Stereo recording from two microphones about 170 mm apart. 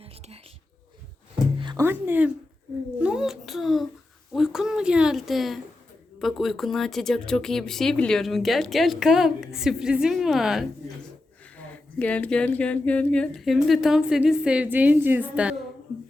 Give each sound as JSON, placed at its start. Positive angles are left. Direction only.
{"t": 1.5, "sound": "music", "side_deg": -25}
{"t": 1.8, "sound": "music", "side_deg": -10}
{"t": 3.0, "sound": "a sound", "side_deg": -5}
{"t": 6.1, "sound": "speech", "side_deg": 0}